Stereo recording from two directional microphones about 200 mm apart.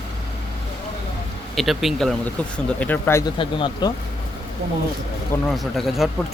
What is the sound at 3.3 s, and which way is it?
Speech, 25° left (ahead or behind).